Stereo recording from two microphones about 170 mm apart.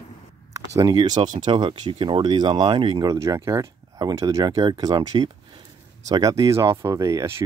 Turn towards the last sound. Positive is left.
turn(degrees=-20)  # may be behind; listen again after turning